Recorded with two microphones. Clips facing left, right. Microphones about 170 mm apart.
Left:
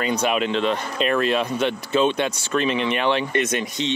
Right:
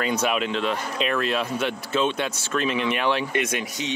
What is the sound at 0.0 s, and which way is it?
Speech, 5° right (ahead or behind).